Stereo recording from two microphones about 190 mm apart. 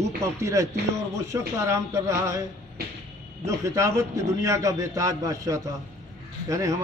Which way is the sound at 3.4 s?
15° right (ahead or behind).